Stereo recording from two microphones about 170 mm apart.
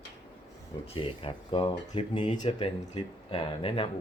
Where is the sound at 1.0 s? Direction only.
30° left (ahead or behind).